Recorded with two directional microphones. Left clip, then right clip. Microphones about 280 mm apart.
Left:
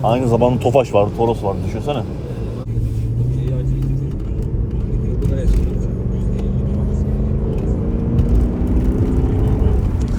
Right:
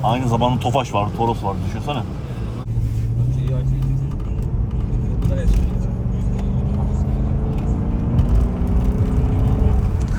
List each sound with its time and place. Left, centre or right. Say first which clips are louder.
0.0 s speech: left 4 dB; right